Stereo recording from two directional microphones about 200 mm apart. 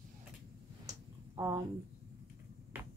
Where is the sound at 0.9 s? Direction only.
20° right (ahead or behind).